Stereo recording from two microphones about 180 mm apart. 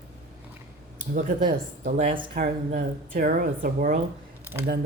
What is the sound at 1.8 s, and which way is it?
Speech, 40° right (ahead or behind).